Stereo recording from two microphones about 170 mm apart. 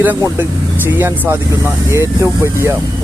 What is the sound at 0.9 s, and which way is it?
Speech, 10° right (ahead or behind).